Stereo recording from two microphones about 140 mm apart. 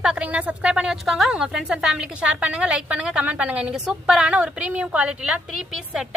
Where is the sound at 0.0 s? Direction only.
5° right (ahead or behind).